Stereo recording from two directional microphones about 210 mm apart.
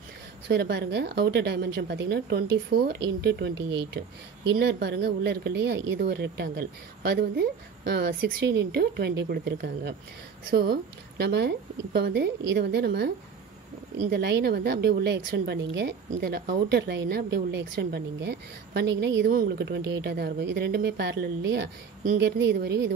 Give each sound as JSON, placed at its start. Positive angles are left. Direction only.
{"t": 0.5, "sound": "a woman's voice", "side_deg": -50}